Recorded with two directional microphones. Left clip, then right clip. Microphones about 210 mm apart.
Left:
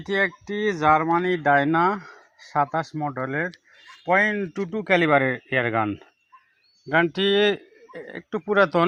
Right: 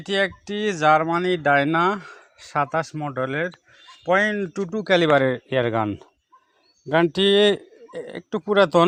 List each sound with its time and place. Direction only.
0.0 s a man's voice: 50° right (ahead or behind)